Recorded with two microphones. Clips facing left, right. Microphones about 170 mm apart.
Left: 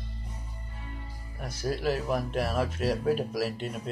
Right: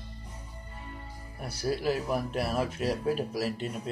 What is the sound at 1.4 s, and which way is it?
Speech, 10° right (ahead or behind).